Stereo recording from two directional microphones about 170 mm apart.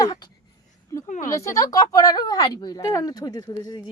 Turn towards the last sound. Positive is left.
turn(degrees=20)  # may be behind; listen again after turning